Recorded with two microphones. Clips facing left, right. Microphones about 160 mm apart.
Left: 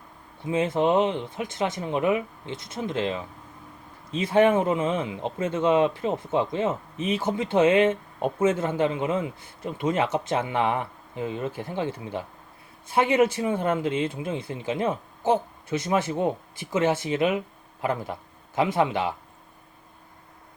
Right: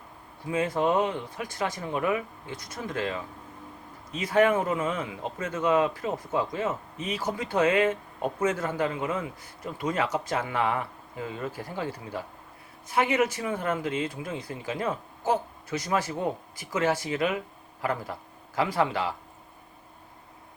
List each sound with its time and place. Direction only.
0.4 s a man's voice: 25° left (ahead or behind)